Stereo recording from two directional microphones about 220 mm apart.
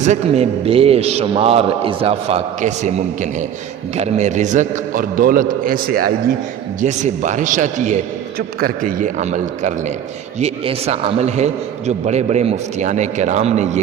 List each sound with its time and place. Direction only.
0.0 s a man's voice: 30° right (ahead or behind)